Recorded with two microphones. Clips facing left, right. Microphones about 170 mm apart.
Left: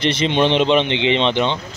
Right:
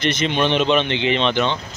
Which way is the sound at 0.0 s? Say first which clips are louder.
Left 3 dB; 30° left (ahead or behind).